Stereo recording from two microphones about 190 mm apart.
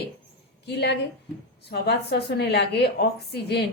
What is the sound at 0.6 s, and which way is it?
A woman's voice, 60° left (ahead or behind).